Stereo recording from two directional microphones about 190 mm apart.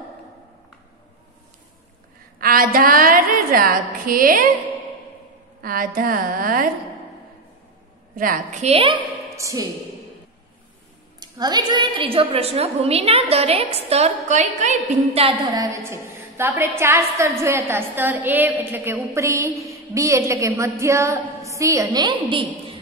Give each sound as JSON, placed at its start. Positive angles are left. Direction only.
{"t": 2.4, "sound": "a woman's voice", "side_deg": -50}
{"t": 5.6, "sound": "a woman's voice", "side_deg": -50}
{"t": 8.2, "sound": "a woman's voice", "side_deg": -45}
{"t": 9.2, "sound": "a sound", "side_deg": -15}
{"t": 11.1, "sound": "a woman's voice", "side_deg": -20}
{"t": 15.5, "sound": "a woman's voice", "side_deg": -20}